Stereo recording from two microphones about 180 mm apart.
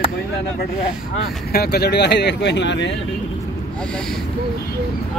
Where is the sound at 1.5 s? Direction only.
65° left (ahead or behind); by 2.9 s 80° left.